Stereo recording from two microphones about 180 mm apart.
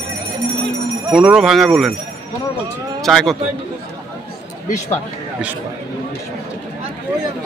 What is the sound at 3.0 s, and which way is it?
Speech, centre (ahead or behind).